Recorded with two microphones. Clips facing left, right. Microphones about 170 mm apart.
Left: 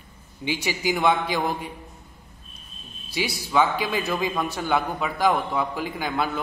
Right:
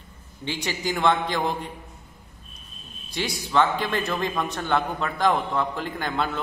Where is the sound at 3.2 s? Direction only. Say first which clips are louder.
Even; 10° left (ahead or behind).